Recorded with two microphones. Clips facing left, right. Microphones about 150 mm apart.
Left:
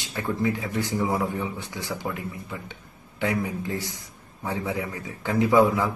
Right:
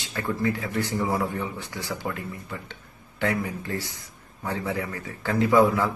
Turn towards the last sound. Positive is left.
turn(degrees=20)  # may be behind; listen again after turning